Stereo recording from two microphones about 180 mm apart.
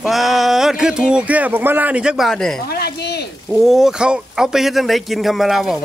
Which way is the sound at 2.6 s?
60° left (ahead or behind).